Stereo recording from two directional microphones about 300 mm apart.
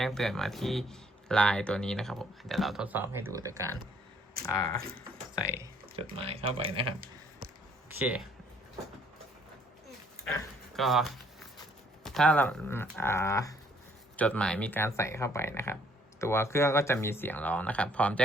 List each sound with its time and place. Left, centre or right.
0.0 s speech: centre
4.4 s speech: right
5.3 s speech: centre
6.0 s speech: centre
7.9 s speech: centre
10.2 s dog: centre
12.0 s speech: centre